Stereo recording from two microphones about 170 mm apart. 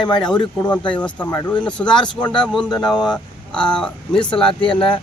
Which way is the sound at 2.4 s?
Centre (ahead or behind).